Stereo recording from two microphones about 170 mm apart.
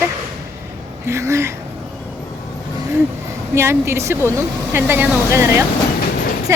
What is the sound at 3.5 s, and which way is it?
A woman's voice, 15° right (ahead or behind).